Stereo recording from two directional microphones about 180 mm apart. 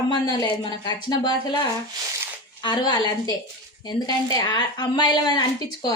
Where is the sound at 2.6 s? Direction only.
25° left (ahead or behind).